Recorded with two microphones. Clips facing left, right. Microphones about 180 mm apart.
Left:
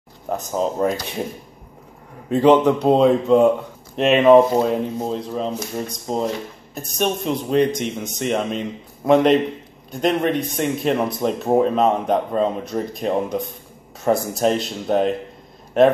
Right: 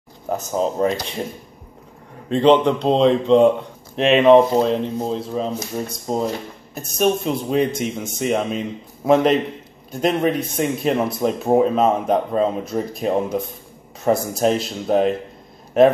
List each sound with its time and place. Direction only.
0.3 s speech: centre (ahead or behind)
2.2 s speech: 5° left (ahead or behind)
6.1 s speech: 40° right (ahead or behind)
6.7 s speech: centre (ahead or behind)